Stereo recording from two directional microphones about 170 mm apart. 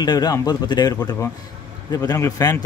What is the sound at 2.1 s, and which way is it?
Speech, 20° left (ahead or behind).